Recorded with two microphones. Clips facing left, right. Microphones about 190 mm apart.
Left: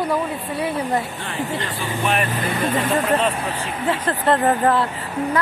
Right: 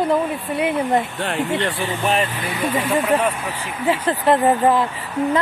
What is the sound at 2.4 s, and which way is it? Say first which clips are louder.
Speech: left 1 dB; 50° left (ahead or behind).